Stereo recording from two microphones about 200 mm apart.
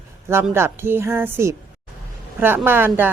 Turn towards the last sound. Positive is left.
turn(degrees=-10)  # may be behind; listen again after turning